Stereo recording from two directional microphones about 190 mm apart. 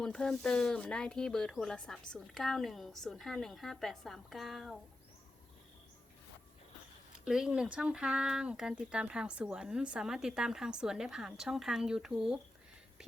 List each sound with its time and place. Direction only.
0.0 s speech: 5° left (ahead or behind)
7.3 s speech: 5° right (ahead or behind)